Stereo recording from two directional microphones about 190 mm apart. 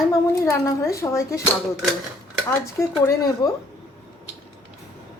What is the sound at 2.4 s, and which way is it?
Speech, 15° left (ahead or behind).